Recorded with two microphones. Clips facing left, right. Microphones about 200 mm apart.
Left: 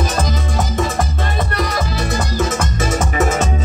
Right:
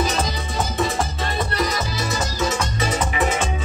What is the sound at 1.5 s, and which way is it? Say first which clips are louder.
Music: left 3 dB; 60° left (ahead or behind).